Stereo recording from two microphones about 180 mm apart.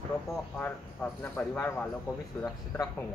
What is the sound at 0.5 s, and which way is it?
Speech, 10° left (ahead or behind).